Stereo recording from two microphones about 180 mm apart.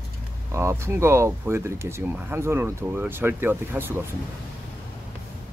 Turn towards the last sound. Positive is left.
turn(degrees=-10)  # may be behind; listen again after turning